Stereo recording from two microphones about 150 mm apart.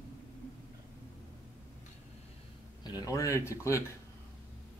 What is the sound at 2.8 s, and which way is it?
Speech, 20° left (ahead or behind).